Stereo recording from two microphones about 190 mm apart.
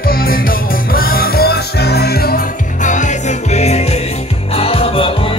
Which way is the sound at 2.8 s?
40° left (ahead or behind).